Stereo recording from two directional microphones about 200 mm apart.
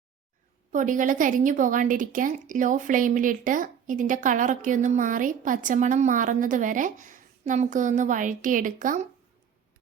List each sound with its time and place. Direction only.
0.7 s a woman's voice: 40° right (ahead or behind)